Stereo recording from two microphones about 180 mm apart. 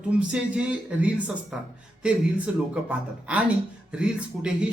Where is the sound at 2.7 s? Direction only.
5° right (ahead or behind).